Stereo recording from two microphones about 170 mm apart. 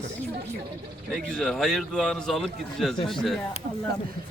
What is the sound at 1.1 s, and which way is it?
Speech, centre (ahead or behind).